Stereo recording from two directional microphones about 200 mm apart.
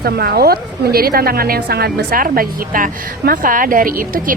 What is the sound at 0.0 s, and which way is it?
A woman's voice, 50° right (ahead or behind).